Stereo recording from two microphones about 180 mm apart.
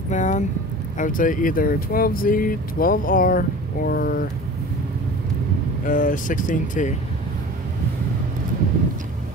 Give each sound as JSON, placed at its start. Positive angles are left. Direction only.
{"t": 0.1, "sound": "speech", "side_deg": 40}
{"t": 5.9, "sound": "speech", "side_deg": 45}